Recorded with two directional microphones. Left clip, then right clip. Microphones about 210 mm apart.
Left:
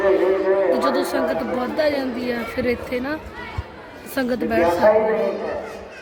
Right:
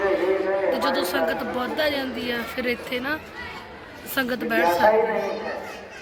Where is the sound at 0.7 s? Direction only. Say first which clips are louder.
Left 3 dB; 15° left (ahead or behind).